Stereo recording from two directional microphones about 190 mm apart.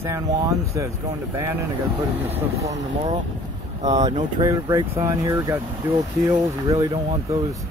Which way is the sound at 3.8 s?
20° right (ahead or behind).